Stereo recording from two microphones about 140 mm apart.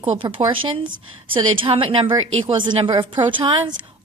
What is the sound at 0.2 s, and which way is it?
A woman's voice, 40° right (ahead or behind).